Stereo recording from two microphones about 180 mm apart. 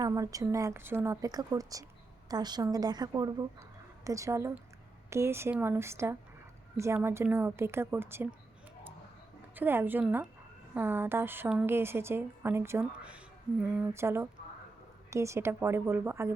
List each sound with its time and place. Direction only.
0.0 s a woman's voice: 20° right (ahead or behind)
9.6 s a woman's voice: 10° right (ahead or behind)